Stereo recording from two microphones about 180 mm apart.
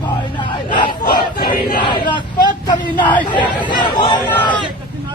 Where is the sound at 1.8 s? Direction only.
25° left (ahead or behind).